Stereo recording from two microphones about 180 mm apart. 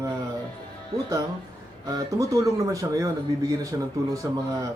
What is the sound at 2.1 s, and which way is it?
Speech, 20° right (ahead or behind).